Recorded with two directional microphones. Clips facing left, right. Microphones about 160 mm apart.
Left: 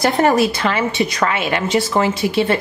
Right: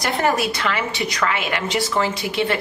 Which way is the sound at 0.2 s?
25° left (ahead or behind).